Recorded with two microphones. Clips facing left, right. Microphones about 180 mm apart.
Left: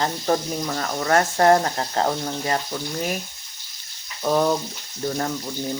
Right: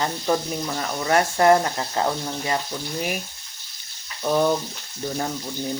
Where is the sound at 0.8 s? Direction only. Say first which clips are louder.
Left 1 dB; 15° right (ahead or behind).